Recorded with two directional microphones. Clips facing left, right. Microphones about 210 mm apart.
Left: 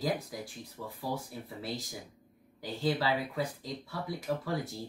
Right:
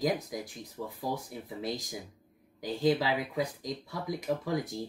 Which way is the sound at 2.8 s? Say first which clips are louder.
Right 3 dB; 15° right (ahead or behind).